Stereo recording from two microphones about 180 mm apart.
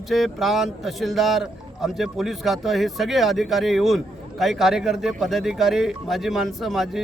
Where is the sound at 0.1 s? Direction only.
Centre (ahead or behind).